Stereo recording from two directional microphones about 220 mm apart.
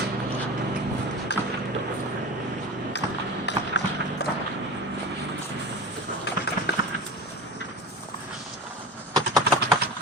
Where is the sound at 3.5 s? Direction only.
50° left (ahead or behind).